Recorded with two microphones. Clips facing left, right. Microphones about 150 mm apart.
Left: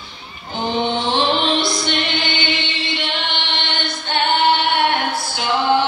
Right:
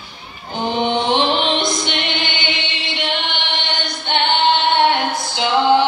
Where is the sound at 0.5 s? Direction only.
15° right (ahead or behind).